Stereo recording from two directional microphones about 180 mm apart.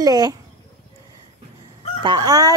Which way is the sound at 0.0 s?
20° right (ahead or behind).